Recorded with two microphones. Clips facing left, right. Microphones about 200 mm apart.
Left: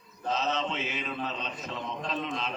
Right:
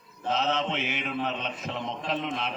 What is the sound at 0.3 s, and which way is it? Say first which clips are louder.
Mantra: right 3 dB; 65° right (ahead or behind).